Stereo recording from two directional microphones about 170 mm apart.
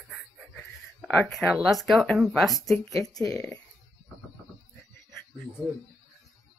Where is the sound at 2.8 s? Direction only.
20° left (ahead or behind).